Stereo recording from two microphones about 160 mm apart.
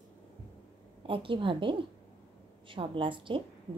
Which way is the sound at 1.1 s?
30° right (ahead or behind).